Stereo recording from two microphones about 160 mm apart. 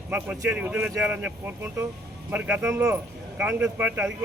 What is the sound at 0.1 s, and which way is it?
Speech, 10° right (ahead or behind).